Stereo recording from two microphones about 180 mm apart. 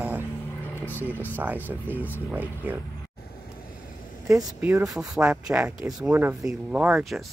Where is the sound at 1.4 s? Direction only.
10° right (ahead or behind).